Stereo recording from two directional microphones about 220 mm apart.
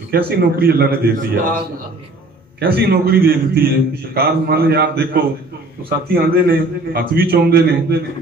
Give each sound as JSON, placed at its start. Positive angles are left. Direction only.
{"t": 0.1, "sound": "a man's voice", "side_deg": -45}
{"t": 2.6, "sound": "a man's voice", "side_deg": -45}